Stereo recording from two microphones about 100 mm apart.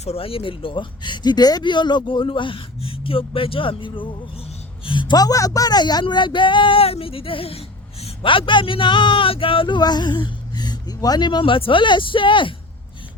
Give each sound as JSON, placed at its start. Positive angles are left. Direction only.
{"t": 0.0, "sound": "speech", "side_deg": 80}